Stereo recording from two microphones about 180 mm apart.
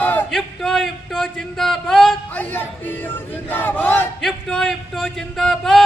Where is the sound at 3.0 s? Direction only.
10° left (ahead or behind).